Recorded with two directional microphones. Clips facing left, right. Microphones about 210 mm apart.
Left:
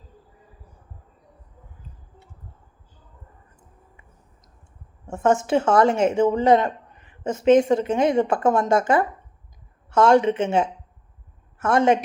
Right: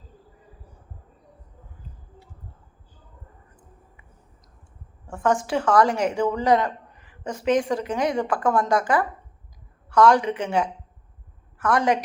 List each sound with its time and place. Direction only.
5.0 s speech: 25° left (ahead or behind)